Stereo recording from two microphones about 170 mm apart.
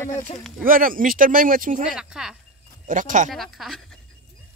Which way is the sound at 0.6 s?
55° right (ahead or behind).